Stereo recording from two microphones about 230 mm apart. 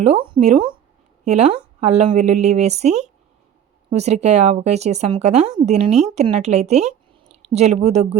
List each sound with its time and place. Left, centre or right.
0.0 s speech: right